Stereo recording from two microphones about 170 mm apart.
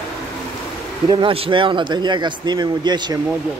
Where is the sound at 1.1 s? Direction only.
30° right (ahead or behind).